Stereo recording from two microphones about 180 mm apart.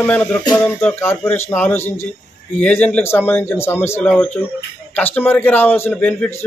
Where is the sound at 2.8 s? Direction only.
10° left (ahead or behind).